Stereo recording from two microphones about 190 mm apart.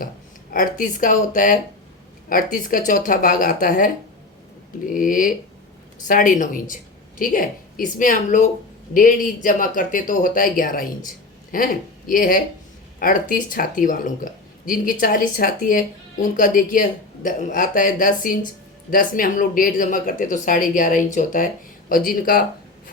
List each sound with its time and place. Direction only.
0.5 s speech: 45° left (ahead or behind)